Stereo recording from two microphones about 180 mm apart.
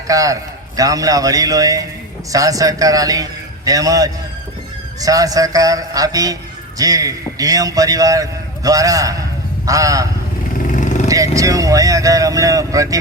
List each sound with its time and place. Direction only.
0.1 s a man's voice: 20° right (ahead or behind)
10.7 s vehicle: 45° left (ahead or behind)
11.1 s a man's voice: 20° right (ahead or behind)